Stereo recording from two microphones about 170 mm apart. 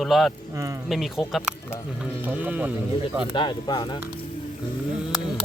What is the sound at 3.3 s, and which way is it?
Speech, 25° left (ahead or behind).